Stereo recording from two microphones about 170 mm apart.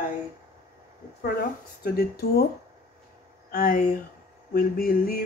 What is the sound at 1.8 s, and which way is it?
Speech, 70° left (ahead or behind).